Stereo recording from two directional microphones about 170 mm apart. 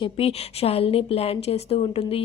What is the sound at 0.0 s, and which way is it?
Speech, 35° left (ahead or behind).